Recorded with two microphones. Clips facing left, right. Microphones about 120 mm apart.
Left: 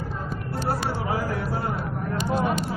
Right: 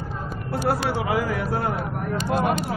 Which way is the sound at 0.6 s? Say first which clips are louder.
Right 4 dB; 75° right (ahead or behind).